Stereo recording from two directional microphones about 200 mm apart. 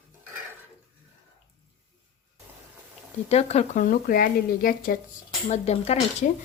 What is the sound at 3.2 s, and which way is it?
Speech, 30° left (ahead or behind).